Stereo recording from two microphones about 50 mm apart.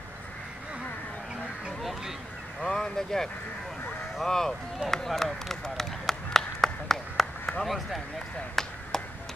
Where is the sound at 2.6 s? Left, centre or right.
Centre.